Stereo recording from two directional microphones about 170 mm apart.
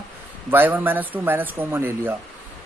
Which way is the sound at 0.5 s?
10° right (ahead or behind).